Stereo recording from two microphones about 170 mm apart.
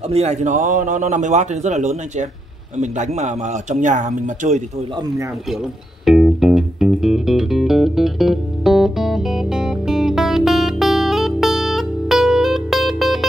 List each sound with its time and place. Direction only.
0.1 s a man's voice: 40° right (ahead or behind)
6.0 s music: centre (ahead or behind)